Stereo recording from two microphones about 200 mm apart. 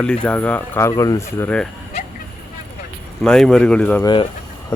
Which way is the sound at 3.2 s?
5° left (ahead or behind).